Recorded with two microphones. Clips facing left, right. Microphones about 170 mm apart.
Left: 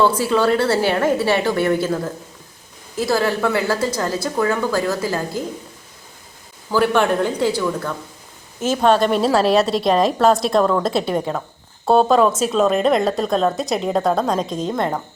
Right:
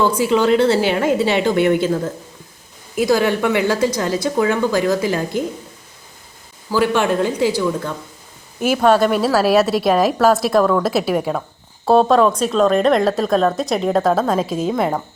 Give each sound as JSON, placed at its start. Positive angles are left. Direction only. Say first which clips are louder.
{"t": 0.0, "sound": "a woman's voice", "louder": "right 1 dB", "side_deg": -15}
{"t": 2.9, "sound": "a woman's voice", "louder": "right 3 dB", "side_deg": -15}
{"t": 6.7, "sound": "a woman's voice", "louder": "even", "side_deg": -10}
{"t": 8.6, "sound": "a woman's voice", "louder": "right 2 dB", "side_deg": -10}